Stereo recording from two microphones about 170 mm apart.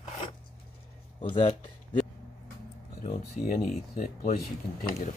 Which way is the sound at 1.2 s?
30° left (ahead or behind).